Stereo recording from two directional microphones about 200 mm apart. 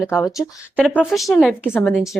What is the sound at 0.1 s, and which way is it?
A woman's voice, 10° left (ahead or behind).